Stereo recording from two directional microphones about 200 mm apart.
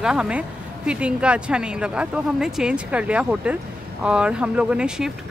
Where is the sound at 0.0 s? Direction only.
5° right (ahead or behind).